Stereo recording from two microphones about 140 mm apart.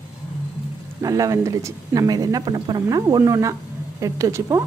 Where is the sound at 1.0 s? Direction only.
25° right (ahead or behind).